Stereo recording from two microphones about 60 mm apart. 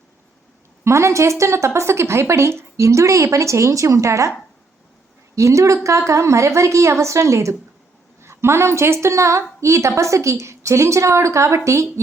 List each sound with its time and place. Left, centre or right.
0.9 s a woman's voice: right
5.3 s a woman's voice: right
8.2 s a woman's voice: right